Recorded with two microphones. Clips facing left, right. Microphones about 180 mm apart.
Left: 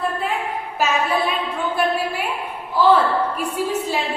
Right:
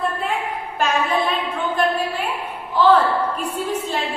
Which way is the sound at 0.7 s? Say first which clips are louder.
Even; 5° left (ahead or behind).